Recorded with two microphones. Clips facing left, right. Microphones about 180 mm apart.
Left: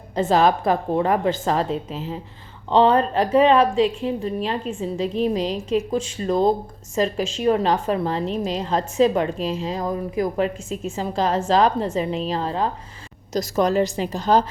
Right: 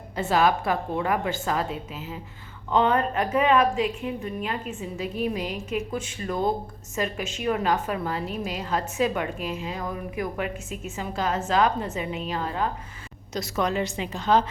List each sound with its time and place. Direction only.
0.2 s a woman's voice: 35° left (ahead or behind)